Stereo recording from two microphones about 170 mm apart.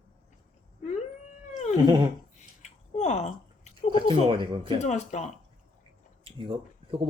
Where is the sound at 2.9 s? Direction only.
40° left (ahead or behind).